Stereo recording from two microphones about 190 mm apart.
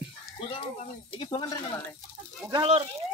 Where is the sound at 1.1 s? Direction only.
25° left (ahead or behind).